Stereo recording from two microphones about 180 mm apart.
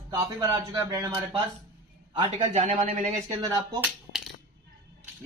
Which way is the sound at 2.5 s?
45° right (ahead or behind).